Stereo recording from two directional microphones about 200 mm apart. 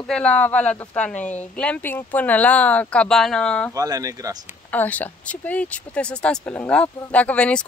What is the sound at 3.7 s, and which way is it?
Speech, 15° right (ahead or behind).